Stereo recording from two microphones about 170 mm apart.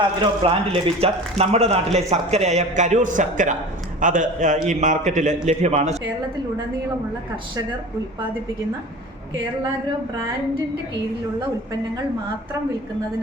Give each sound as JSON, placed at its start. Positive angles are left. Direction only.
{"t": 0.0, "sound": "a man's voice", "side_deg": -30}